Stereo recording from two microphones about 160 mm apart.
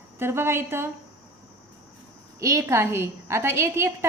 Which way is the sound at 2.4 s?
20° right (ahead or behind).